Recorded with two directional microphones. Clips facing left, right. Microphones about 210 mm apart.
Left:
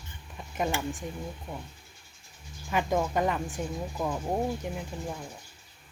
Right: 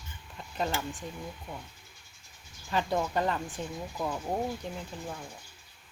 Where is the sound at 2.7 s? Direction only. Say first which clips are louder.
Left 2 dB; 15° left (ahead or behind).